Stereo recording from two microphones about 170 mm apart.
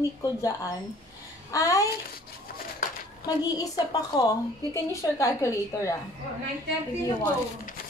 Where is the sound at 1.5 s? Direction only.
20° left (ahead or behind).